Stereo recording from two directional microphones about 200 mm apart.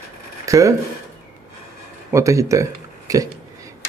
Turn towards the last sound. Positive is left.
turn(degrees=-15)  # may be behind; listen again after turning